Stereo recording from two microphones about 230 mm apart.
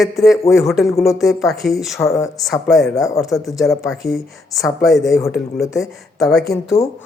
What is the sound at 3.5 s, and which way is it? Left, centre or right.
Speech, centre.